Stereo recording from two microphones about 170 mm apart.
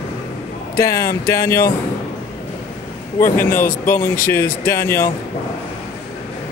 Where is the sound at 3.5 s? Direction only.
55° left (ahead or behind).